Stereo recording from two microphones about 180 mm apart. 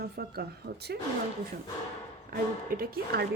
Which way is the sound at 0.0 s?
60° right (ahead or behind).